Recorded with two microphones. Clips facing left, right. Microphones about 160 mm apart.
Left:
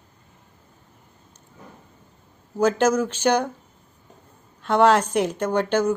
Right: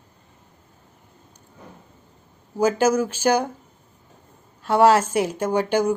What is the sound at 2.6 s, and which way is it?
Speech, 10° right (ahead or behind).